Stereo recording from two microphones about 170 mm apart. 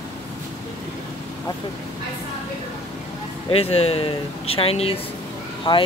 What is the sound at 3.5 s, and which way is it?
Speech, 35° left (ahead or behind).